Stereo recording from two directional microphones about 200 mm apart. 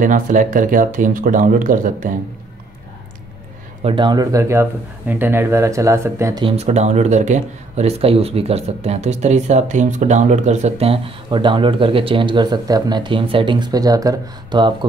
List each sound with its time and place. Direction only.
0.0 s speech: 40° right (ahead or behind)
3.8 s speech: 25° right (ahead or behind)
6.4 s speech: 30° right (ahead or behind)